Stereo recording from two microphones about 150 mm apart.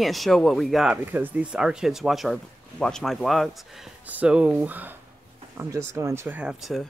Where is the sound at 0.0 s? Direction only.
Centre (ahead or behind).